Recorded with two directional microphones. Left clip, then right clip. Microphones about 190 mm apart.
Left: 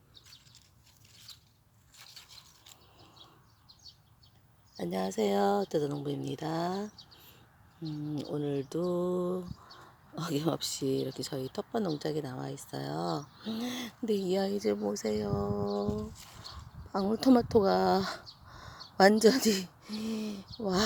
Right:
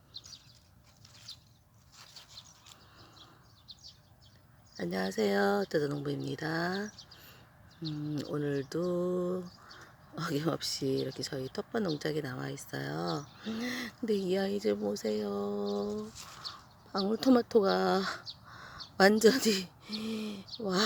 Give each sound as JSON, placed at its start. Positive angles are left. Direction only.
{"t": 4.8, "sound": "speech", "side_deg": 10}
{"t": 8.0, "sound": "speech", "side_deg": 5}
{"t": 16.9, "sound": "speech", "side_deg": 15}